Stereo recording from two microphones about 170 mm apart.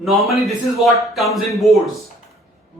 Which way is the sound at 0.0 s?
Centre (ahead or behind).